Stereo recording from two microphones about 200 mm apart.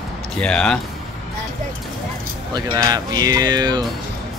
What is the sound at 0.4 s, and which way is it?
Speech, 5° left (ahead or behind).